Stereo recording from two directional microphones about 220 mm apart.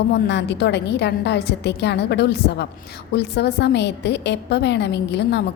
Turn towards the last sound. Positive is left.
turn(degrees=50)  # may be behind; listen again after turning